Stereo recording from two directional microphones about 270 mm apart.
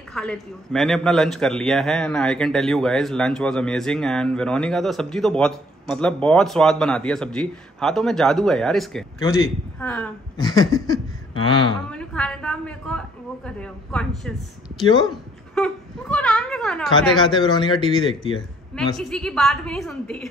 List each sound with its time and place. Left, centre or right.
0.1 s a man's voice: centre
11.9 s a man's voice: centre
14.8 s a sound: centre
17.2 s a man's voice: centre
18.9 s a man's voice: centre